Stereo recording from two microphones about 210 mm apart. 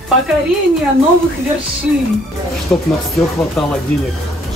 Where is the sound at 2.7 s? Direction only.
5° left (ahead or behind).